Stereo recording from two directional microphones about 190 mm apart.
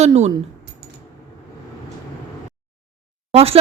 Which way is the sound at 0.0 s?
35° right (ahead or behind).